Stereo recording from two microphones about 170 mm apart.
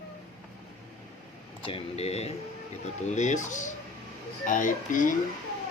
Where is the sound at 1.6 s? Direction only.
35° left (ahead or behind); by 5.1 s 50° left (ahead or behind).